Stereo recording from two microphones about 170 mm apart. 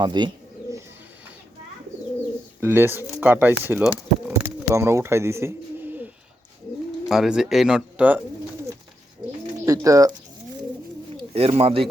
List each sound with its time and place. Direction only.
0.0 s speech: 25° right (ahead or behind)
2.6 s speech: 10° right (ahead or behind)
4.3 s pigeon: 15° right (ahead or behind)
7.1 s speech: 5° right (ahead or behind)
9.6 s speech: 20° right (ahead or behind)
11.2 s speech: 35° right (ahead or behind)